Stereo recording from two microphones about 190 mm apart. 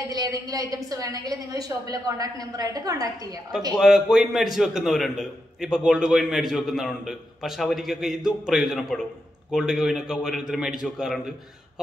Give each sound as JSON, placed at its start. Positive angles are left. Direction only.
{"t": 0.1, "sound": "a woman's voice", "side_deg": -20}
{"t": 3.7, "sound": "a man's voice", "side_deg": -5}